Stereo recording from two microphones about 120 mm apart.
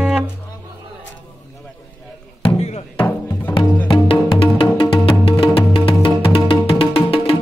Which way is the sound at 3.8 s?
45° left (ahead or behind).